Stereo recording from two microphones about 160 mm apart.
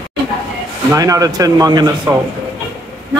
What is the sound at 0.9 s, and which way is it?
Speech, 20° right (ahead or behind).